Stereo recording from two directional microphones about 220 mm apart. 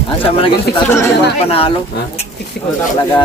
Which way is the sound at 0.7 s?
10° left (ahead or behind).